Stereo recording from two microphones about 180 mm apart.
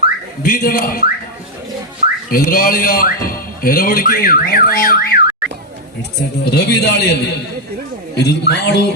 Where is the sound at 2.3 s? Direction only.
50° left (ahead or behind).